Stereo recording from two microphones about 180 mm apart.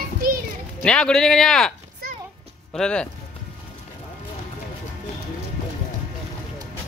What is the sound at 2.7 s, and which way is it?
Speech, 5° left (ahead or behind).